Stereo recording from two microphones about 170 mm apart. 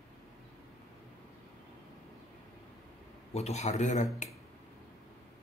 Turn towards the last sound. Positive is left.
turn(degrees=45)  # may be behind; listen again after turning